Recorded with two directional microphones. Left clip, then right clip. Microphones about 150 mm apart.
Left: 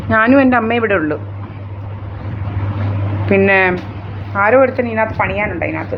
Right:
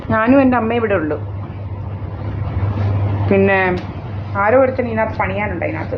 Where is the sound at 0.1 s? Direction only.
15° left (ahead or behind).